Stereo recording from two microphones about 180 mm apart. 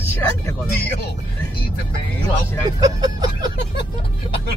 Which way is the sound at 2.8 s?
20° right (ahead or behind).